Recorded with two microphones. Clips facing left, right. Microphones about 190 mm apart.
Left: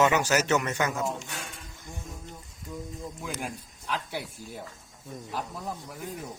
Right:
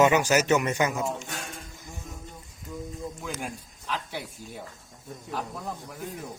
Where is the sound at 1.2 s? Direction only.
45° right (ahead or behind).